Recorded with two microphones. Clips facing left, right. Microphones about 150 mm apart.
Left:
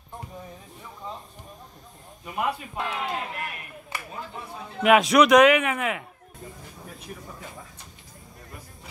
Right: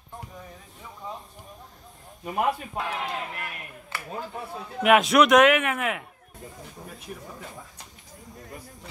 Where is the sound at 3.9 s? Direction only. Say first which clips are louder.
Even; 15° left (ahead or behind).